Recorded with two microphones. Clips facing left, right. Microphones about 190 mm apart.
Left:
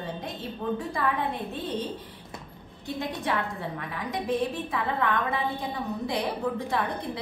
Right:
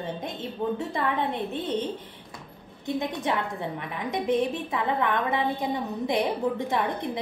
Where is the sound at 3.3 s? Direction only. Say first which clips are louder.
Right 2 dB; 20° right (ahead or behind).